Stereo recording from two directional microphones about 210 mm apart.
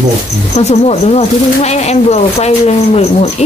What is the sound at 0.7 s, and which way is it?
Speech, 30° left (ahead or behind).